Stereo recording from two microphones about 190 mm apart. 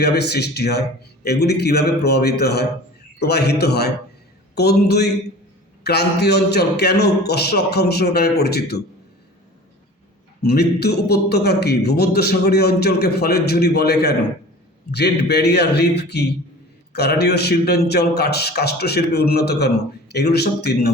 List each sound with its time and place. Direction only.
0.0 s a man's voice: 60° left (ahead or behind)
10.4 s a man's voice: 55° left (ahead or behind)